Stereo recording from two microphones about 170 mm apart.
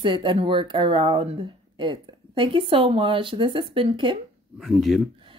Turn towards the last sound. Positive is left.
turn(degrees=0)  # may be behind; listen again after turning